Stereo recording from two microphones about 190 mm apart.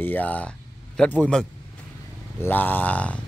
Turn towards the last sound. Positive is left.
turn(degrees=5)  # may be behind; listen again after turning